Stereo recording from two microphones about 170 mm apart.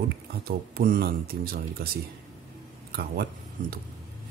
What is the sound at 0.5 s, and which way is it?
Speech, 65° right (ahead or behind).